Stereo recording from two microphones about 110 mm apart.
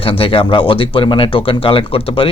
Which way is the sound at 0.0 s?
55° left (ahead or behind).